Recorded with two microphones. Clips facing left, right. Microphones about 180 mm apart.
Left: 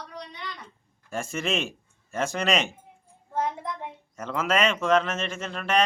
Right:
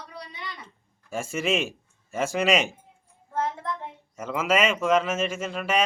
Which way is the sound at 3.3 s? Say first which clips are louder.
Even; 15° left (ahead or behind).